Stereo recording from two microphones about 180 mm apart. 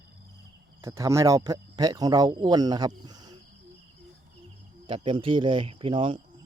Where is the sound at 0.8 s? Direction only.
15° right (ahead or behind).